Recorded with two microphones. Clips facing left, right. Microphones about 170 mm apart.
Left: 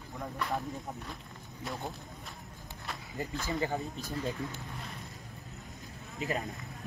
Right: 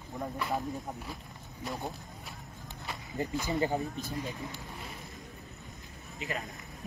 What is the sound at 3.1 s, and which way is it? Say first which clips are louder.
Speech: right 3 dB; 20° right (ahead or behind).